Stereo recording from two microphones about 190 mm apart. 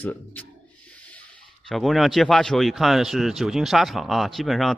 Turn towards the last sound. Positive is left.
turn(degrees=0)  # may be behind; listen again after turning